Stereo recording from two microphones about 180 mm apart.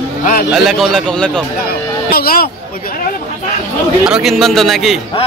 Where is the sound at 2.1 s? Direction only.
55° left (ahead or behind).